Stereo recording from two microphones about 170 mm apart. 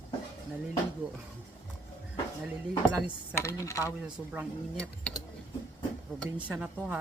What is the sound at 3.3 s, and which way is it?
Speech, 15° left (ahead or behind).